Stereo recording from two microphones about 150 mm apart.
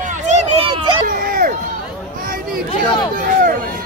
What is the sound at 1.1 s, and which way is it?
Speech, 70° right (ahead or behind).